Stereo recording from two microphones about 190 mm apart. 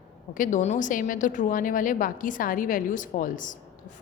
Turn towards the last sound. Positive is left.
turn(degrees=45)  # may be behind; listen again after turning